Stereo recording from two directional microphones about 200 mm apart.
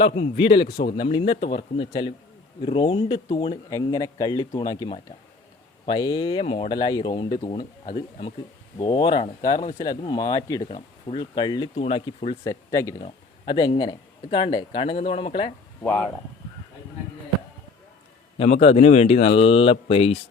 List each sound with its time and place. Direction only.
0.0 s speech: 25° left (ahead or behind)
8.8 s speech: 25° left (ahead or behind)
12.5 s speech: 15° left (ahead or behind)
15.8 s speech: 10° left (ahead or behind)
18.3 s speech: 30° left (ahead or behind)